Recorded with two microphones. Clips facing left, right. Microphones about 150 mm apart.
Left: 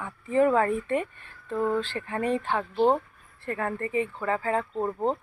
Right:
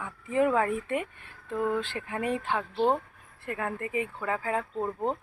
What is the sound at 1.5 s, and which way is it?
Speech, 35° left (ahead or behind).